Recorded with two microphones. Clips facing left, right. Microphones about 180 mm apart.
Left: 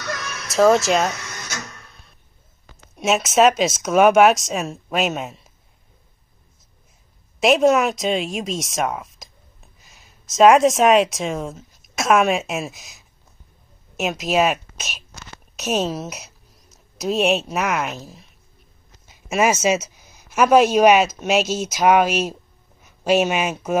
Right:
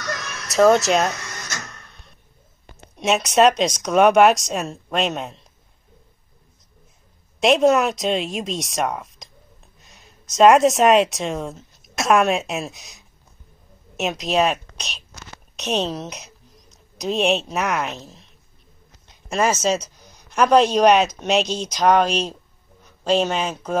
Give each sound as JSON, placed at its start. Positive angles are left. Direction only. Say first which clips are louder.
{"t": 0.5, "sound": "speech", "louder": "even", "side_deg": 0}
{"t": 1.9, "sound": "a sound", "louder": "even", "side_deg": 0}
{"t": 3.0, "sound": "speech", "louder": "even", "side_deg": 0}
{"t": 7.3, "sound": "speech", "louder": "even", "side_deg": 0}